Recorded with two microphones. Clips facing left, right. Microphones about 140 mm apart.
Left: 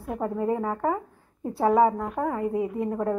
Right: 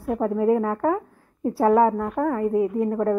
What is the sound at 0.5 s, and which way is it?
A woman's voice, 5° left (ahead or behind).